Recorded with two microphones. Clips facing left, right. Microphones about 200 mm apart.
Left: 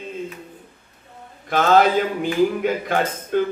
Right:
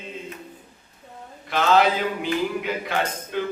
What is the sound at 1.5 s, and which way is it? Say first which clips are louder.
A man's voice: left 3 dB; 45° left (ahead or behind).